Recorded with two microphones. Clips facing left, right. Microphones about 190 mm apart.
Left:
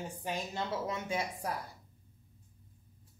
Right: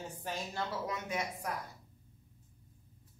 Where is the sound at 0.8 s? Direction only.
30° left (ahead or behind).